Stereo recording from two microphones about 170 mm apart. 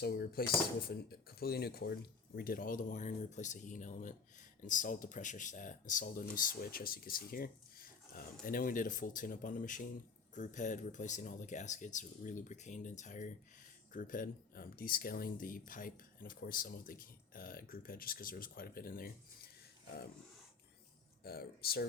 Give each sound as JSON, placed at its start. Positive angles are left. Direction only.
{"t": 0.0, "sound": "speech", "side_deg": 70}
{"t": 21.2, "sound": "speech", "side_deg": 65}